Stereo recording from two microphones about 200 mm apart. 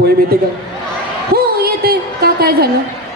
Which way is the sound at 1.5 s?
50° right (ahead or behind).